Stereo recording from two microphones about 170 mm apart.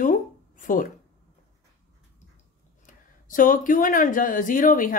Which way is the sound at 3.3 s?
50° left (ahead or behind).